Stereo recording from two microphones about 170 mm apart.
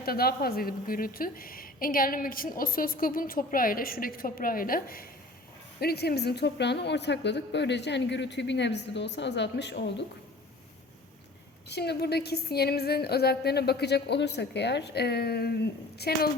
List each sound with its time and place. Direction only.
0.0 s a woman's voice: 65° left (ahead or behind)
5.8 s a woman's voice: 70° left (ahead or behind); by 10.1 s 90° left
11.7 s a woman's voice: 75° left (ahead or behind)